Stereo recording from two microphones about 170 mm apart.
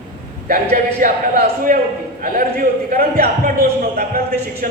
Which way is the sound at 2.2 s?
55° right (ahead or behind).